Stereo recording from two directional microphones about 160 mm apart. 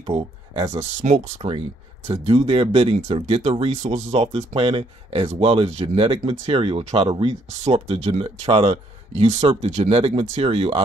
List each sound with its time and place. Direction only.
0.0 s speech: 35° right (ahead or behind)
2.0 s speech: 35° right (ahead or behind)